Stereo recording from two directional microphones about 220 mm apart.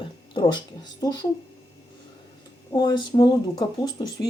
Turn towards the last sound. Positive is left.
turn(degrees=20)  # may be behind; listen again after turning